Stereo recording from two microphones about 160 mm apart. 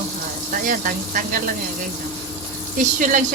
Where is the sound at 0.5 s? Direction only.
60° right (ahead or behind).